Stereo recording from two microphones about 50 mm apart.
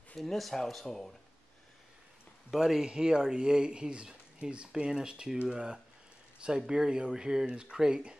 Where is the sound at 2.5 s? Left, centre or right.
Centre.